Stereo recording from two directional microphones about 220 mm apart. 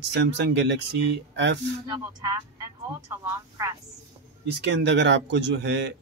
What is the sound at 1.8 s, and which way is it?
Speech, 15° right (ahead or behind).